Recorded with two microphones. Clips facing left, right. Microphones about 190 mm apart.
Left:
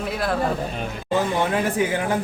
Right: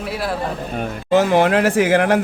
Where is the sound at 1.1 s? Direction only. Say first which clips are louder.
Right 7 dB; 85° right.